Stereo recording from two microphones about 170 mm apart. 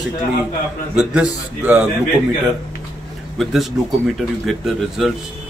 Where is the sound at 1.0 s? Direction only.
5° right (ahead or behind).